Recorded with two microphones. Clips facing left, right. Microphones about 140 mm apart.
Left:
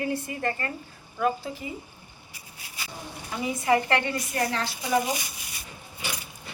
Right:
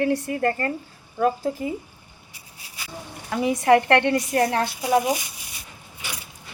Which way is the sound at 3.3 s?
70° right (ahead or behind).